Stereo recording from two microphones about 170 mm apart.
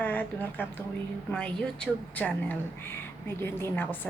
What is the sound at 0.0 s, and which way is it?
A woman's voice, 10° left (ahead or behind).